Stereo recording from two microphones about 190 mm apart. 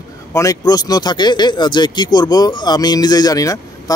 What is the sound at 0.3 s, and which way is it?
A man's voice, 15° left (ahead or behind).